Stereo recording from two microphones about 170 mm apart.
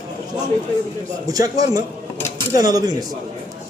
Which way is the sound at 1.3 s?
20° right (ahead or behind).